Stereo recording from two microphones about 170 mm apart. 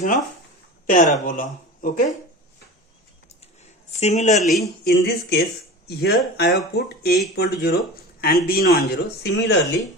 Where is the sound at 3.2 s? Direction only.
40° left (ahead or behind).